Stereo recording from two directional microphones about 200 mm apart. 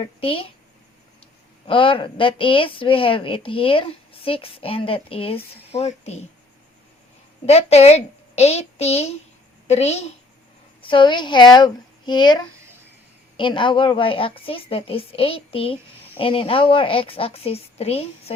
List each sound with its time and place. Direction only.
0.0 s a woman's voice: 25° left (ahead or behind)
1.6 s a woman's voice: 25° left (ahead or behind)
7.4 s a woman's voice: 30° left (ahead or behind)